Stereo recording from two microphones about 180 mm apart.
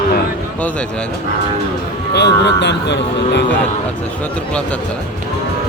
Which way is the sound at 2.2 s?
70° left (ahead or behind).